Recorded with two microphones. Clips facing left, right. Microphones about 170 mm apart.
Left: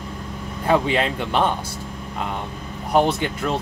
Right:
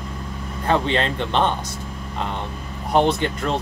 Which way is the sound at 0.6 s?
10° left (ahead or behind).